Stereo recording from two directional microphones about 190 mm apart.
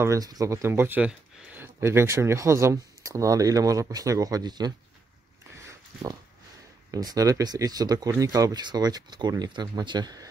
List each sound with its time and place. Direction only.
0.0 s speech: 20° right (ahead or behind)
6.9 s speech: 20° right (ahead or behind)